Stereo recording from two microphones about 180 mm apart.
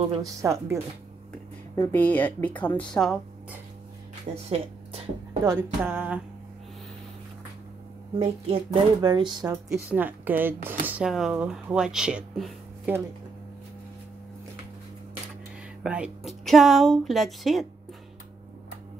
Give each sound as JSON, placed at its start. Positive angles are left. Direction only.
{"t": 0.2, "sound": "speech", "side_deg": -15}
{"t": 1.9, "sound": "a woman's voice", "side_deg": 10}
{"t": 4.3, "sound": "speech", "side_deg": -40}
{"t": 5.4, "sound": "speech", "side_deg": -15}
{"t": 8.2, "sound": "speech", "side_deg": -30}
{"t": 9.7, "sound": "speech", "side_deg": -10}
{"t": 15.8, "sound": "speech", "side_deg": -5}